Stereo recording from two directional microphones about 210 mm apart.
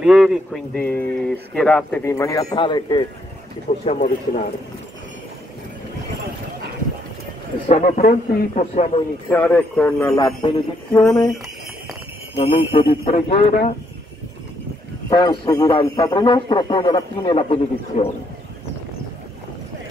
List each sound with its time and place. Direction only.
0.0 s a man's voice: centre (ahead or behind); by 4.1 s 30° left (ahead or behind)
7.6 s a man's voice: 35° left (ahead or behind)
9.3 s speech: 10° left (ahead or behind)
10.9 s speech: 5° left (ahead or behind)
12.4 s a man's voice: 30° left (ahead or behind)
15.0 s a man's voice: 20° left (ahead or behind)